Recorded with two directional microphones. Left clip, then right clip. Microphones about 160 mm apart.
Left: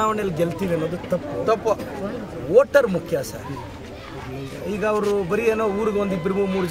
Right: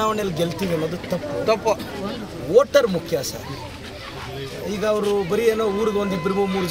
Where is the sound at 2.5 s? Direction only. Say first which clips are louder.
Even; 5° left (ahead or behind).